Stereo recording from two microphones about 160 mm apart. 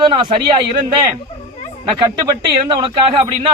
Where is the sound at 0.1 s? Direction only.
30° right (ahead or behind).